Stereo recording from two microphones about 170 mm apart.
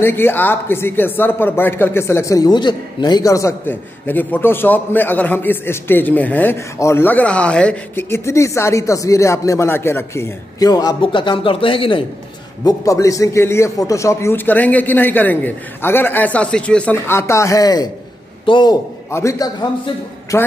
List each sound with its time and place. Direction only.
0.0 s speech: 10° left (ahead or behind); by 12.0 s 30° left (ahead or behind)
12.6 s a man's voice: 20° left (ahead or behind)